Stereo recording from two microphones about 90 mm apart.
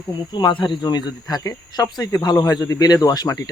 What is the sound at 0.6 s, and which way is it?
Speech, 55° left (ahead or behind).